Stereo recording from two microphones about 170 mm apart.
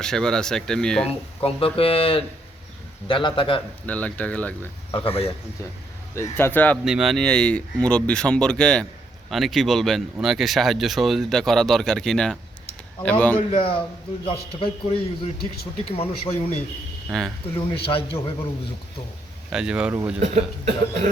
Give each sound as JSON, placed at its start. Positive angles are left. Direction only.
{"t": 0.0, "sound": "speech", "side_deg": 5}
{"t": 1.4, "sound": "a man's voice", "side_deg": 35}
{"t": 3.8, "sound": "speech", "side_deg": 10}
{"t": 4.9, "sound": "a man's voice", "side_deg": 30}
{"t": 6.1, "sound": "speech", "side_deg": 15}
{"t": 6.8, "sound": "speech", "side_deg": -5}
{"t": 13.5, "sound": "a man's voice", "side_deg": 30}
{"t": 17.1, "sound": "speech", "side_deg": 0}
{"t": 17.7, "sound": "a man's voice", "side_deg": 35}
{"t": 19.5, "sound": "speech", "side_deg": -5}
{"t": 20.1, "sound": "cough", "side_deg": -40}